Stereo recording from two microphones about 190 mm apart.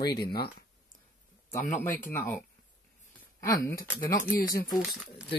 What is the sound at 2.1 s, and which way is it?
Speech, 10° left (ahead or behind).